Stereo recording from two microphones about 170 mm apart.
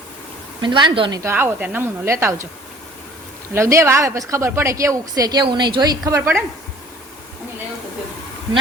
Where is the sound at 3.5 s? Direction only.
15° right (ahead or behind).